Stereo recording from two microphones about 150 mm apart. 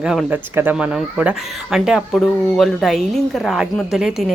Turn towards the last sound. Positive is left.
turn(degrees=-5)  # may be behind; listen again after turning